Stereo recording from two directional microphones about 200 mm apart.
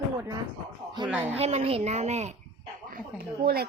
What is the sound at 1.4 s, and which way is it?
Speech, 30° right (ahead or behind).